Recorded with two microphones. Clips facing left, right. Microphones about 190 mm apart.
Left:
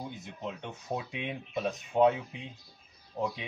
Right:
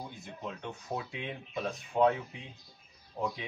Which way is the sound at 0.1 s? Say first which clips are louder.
Left 2 dB; 20° left (ahead or behind).